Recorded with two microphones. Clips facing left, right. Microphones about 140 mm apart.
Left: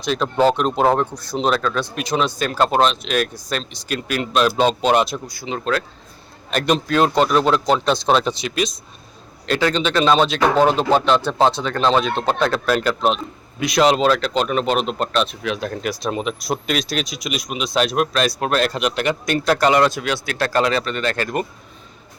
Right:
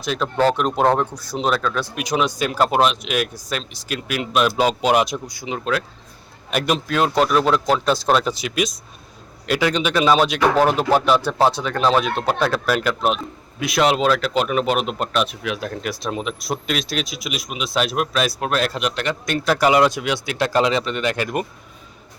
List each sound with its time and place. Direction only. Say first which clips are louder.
0.0 s speech: left 2 dB; 5° right (ahead or behind)
5.5 s speech: left 1 dB; 5° right (ahead or behind)
19.5 s speech: right 2 dB; 10° right (ahead or behind)